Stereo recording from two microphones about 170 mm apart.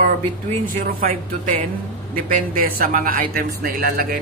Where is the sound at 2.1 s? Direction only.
55° right (ahead or behind).